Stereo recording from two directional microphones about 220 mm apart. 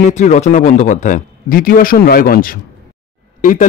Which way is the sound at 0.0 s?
35° left (ahead or behind).